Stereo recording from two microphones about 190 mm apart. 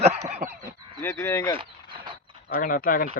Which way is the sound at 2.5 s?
45° left (ahead or behind).